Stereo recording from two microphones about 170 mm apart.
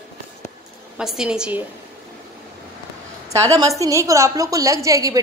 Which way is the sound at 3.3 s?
20° right (ahead or behind).